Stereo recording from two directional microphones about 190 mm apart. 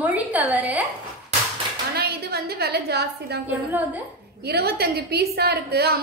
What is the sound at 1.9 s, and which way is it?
A woman's voice, 55° right (ahead or behind).